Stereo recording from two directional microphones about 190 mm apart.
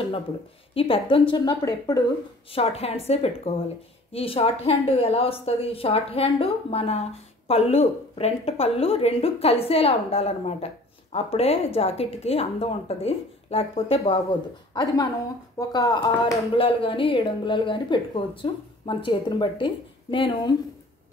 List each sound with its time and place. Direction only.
0.7 s speech: 30° left (ahead or behind)
2.5 s a woman's voice: 35° left (ahead or behind)
14.7 s a woman's voice: 20° left (ahead or behind)